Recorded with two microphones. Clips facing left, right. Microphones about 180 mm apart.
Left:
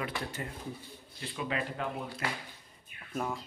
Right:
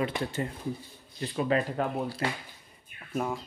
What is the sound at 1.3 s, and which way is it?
Speech, 45° right (ahead or behind).